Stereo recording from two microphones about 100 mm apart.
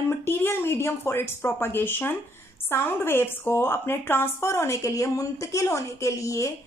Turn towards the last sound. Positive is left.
turn(degrees=30)  # may be behind; listen again after turning